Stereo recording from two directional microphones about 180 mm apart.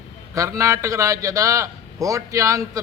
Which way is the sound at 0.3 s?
15° right (ahead or behind).